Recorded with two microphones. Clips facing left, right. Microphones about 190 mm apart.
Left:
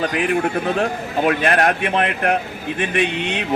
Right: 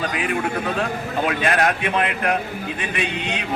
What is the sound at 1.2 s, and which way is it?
A man's voice, 50° left (ahead or behind).